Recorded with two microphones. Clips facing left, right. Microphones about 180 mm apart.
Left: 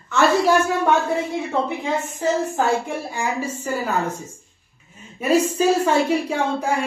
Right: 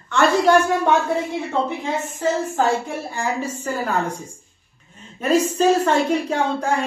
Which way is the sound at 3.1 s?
10° left (ahead or behind).